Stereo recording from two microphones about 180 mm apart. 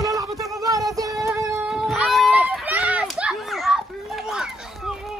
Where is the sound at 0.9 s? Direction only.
20° right (ahead or behind).